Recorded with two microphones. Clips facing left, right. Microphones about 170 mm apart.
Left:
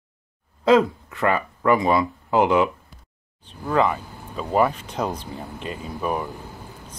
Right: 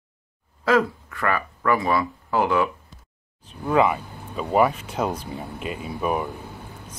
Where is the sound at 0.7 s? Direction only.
20° left (ahead or behind).